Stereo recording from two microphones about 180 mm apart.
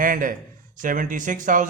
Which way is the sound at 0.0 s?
50° right (ahead or behind).